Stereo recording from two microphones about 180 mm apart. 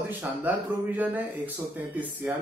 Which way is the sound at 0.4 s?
10° right (ahead or behind).